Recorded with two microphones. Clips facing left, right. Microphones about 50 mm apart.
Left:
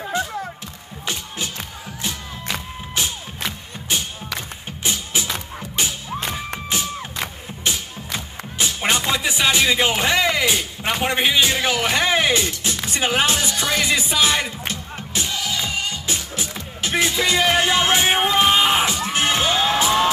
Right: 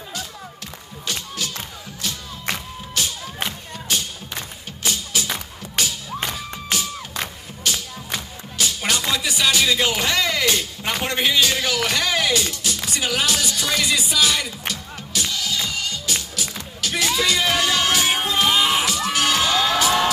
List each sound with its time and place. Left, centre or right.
0.1 s a sound: left
2.5 s music: left
4.8 s music: left
7.7 s music: left